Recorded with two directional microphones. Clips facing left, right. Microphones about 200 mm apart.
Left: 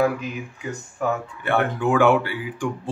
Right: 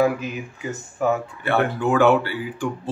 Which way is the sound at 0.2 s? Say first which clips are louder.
Right 1 dB; 5° right (ahead or behind).